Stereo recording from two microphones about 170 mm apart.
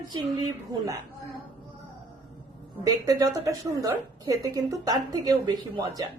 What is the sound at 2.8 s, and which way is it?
A woman's voice, 20° right (ahead or behind).